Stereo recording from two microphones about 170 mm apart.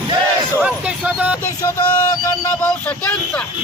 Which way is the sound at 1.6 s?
15° left (ahead or behind).